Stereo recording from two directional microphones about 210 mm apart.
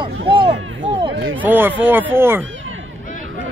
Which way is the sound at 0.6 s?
65° right (ahead or behind).